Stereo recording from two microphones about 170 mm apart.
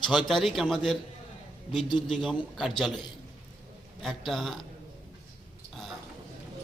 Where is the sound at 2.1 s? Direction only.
Centre (ahead or behind).